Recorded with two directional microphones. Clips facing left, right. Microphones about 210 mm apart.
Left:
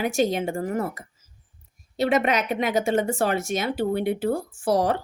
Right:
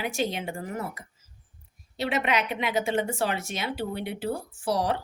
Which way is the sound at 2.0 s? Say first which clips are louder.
Left 5 dB; 45° left (ahead or behind).